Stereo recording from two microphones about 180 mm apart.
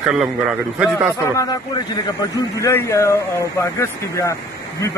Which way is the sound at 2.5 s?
15° left (ahead or behind).